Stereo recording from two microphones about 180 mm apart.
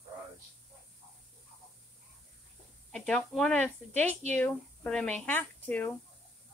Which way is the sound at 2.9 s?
5° left (ahead or behind).